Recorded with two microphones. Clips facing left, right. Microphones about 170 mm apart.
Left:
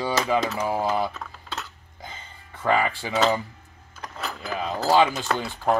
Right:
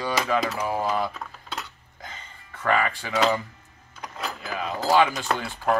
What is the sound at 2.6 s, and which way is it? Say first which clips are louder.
Speech: left 1 dB; 15° left (ahead or behind).